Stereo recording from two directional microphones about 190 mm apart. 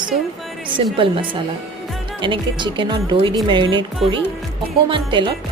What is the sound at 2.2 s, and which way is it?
Speech, 25° right (ahead or behind).